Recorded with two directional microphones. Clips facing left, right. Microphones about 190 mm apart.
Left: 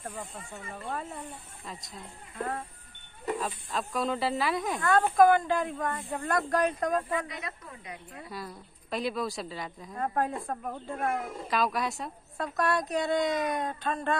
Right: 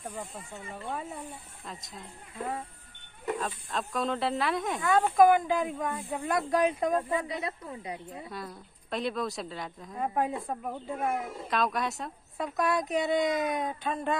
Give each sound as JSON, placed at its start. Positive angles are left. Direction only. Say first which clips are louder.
{"t": 0.0, "sound": "speech", "louder": "right 1 dB", "side_deg": 0}
{"t": 3.3, "sound": "speech", "louder": "even", "side_deg": 0}
{"t": 8.3, "sound": "speech", "louder": "even", "side_deg": 0}